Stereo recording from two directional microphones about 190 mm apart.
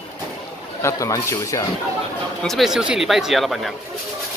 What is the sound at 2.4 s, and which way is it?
Speech, centre (ahead or behind).